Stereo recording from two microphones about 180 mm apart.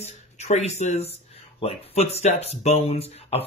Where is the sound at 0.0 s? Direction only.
35° left (ahead or behind).